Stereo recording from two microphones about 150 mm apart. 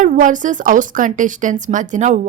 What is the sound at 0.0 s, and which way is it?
Speech, 60° right (ahead or behind).